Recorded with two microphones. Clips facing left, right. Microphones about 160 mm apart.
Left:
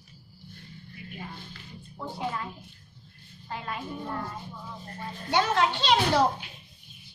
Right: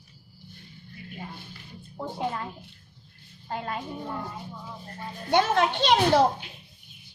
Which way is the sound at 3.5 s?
45° right (ahead or behind).